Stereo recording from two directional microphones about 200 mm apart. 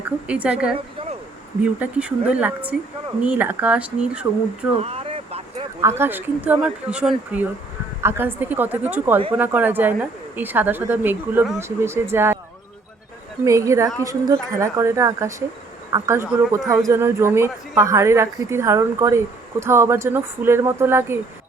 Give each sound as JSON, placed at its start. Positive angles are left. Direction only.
{"t": 0.0, "sound": "a woman's voice", "side_deg": -5}
{"t": 1.6, "sound": "a woman's voice", "side_deg": -5}
{"t": 4.7, "sound": "a sound", "side_deg": -30}
{"t": 6.0, "sound": "a woman's voice", "side_deg": -10}
{"t": 13.4, "sound": "a woman's voice", "side_deg": -15}
{"t": 16.6, "sound": "speech", "side_deg": 0}
{"t": 16.9, "sound": "a woman's voice", "side_deg": -15}